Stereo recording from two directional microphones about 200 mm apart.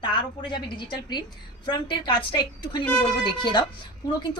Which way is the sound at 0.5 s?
25° left (ahead or behind).